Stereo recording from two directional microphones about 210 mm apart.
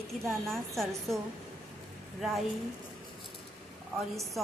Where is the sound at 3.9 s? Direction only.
Centre (ahead or behind).